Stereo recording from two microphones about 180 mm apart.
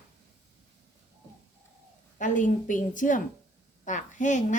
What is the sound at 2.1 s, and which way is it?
A woman's voice, 45° left (ahead or behind).